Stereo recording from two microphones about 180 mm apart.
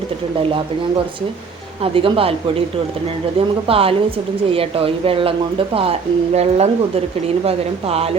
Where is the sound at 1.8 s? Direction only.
30° right (ahead or behind).